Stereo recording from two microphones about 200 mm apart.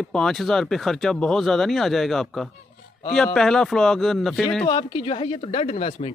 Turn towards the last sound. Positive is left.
turn(degrees=35)  # may be behind; listen again after turning